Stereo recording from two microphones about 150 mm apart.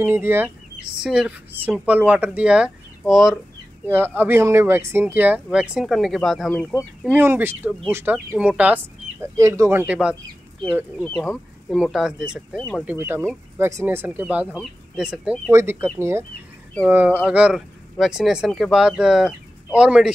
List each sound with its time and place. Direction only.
0.0 s speech: 15° right (ahead or behind)
3.9 s speech: 15° right (ahead or behind)
6.5 s speech: 10° left (ahead or behind)
7.0 s speech: 10° right (ahead or behind)
12.8 s speech: 15° right (ahead or behind)
15.5 s speech: 15° right (ahead or behind)